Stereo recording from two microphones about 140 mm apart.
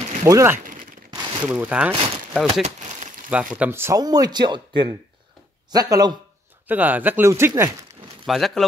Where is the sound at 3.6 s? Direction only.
15° right (ahead or behind).